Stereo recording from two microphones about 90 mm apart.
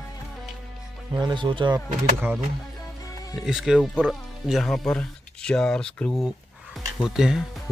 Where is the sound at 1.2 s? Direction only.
60° right (ahead or behind).